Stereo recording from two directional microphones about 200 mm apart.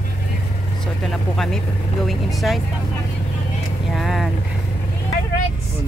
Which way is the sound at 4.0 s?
Centre (ahead or behind).